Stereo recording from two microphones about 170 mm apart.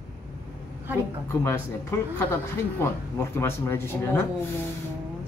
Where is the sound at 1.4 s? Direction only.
15° left (ahead or behind).